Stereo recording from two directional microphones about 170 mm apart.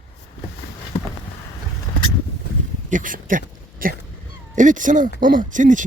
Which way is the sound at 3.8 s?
55° right (ahead or behind).